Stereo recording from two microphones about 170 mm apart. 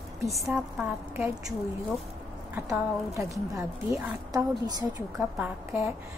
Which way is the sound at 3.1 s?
20° right (ahead or behind).